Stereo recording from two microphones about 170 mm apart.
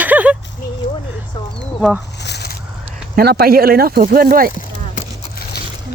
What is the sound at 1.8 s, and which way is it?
Speech, centre (ahead or behind).